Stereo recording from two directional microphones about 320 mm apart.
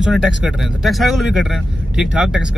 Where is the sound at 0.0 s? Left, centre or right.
Centre.